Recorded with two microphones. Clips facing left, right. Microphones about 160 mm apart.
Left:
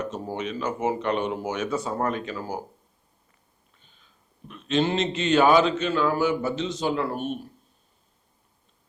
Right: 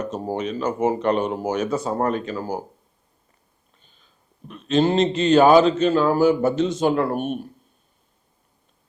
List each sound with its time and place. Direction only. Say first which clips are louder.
0.0 s a man's voice: right 4 dB; 40° right (ahead or behind)
4.4 s a man's voice: right 5 dB; 40° right (ahead or behind); by 7.4 s 55° right (ahead or behind)